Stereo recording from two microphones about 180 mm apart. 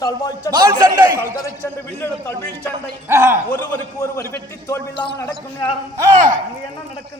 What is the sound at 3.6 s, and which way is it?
A man's voice, 15° left (ahead or behind).